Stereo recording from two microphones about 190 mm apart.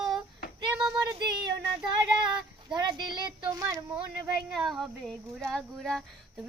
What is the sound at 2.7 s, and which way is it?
Speech, 25° right (ahead or behind).